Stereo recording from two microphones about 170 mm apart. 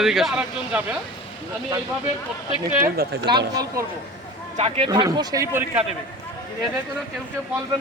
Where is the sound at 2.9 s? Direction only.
65° right (ahead or behind).